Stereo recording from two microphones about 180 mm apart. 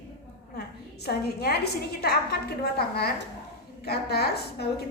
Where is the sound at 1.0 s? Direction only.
60° left (ahead or behind).